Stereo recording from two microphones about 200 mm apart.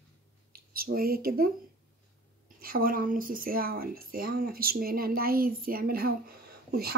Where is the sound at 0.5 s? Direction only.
45° right (ahead or behind).